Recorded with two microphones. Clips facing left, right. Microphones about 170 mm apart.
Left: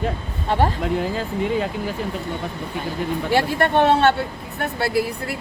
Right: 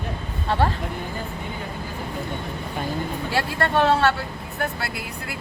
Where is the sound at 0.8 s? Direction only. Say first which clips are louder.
Left 7 dB; 90° left.